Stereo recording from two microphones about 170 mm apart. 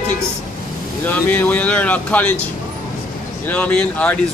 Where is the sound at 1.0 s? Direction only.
10° left (ahead or behind).